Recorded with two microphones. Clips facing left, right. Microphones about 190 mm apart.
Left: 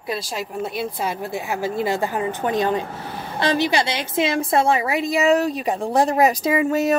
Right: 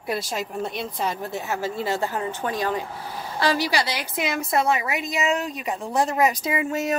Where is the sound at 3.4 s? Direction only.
25° left (ahead or behind).